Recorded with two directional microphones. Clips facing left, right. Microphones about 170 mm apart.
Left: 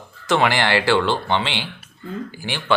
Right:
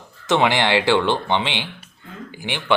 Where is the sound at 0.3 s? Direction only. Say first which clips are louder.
Right 1 dB; 20° right (ahead or behind).